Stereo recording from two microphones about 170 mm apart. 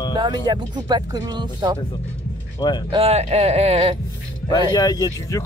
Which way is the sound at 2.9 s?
35° right (ahead or behind).